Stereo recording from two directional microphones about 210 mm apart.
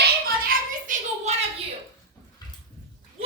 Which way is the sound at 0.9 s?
40° right (ahead or behind).